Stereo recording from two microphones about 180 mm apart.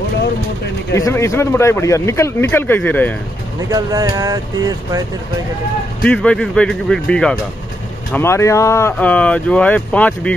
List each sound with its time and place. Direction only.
0.9 s speech: 15° left (ahead or behind)
3.7 s speech: 20° right (ahead or behind)
6.0 s speech: 5° left (ahead or behind)